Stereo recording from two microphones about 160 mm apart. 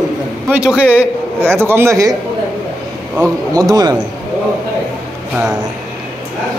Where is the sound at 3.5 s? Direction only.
25° right (ahead or behind).